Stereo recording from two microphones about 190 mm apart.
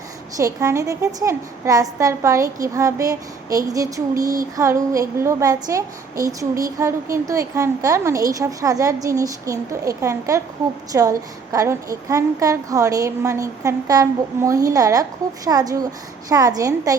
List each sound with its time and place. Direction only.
0.3 s a woman's voice: 15° right (ahead or behind)